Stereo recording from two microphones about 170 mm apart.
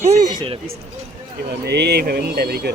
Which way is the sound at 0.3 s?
30° right (ahead or behind).